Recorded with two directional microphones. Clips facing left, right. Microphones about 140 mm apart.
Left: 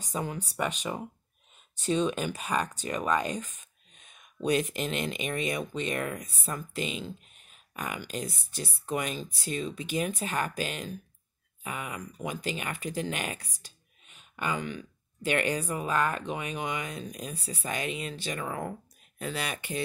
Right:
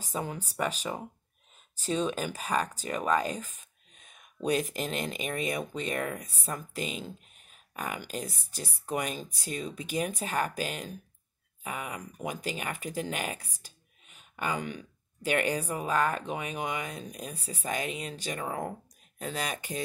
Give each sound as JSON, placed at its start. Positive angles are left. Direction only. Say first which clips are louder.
{"t": 0.0, "sound": "speech", "louder": "left 1 dB", "side_deg": -30}
{"t": 3.5, "sound": "a sound", "louder": "even", "side_deg": -45}
{"t": 4.5, "sound": "speech", "louder": "left 1 dB", "side_deg": -40}
{"t": 18.4, "sound": "speech", "louder": "even", "side_deg": -30}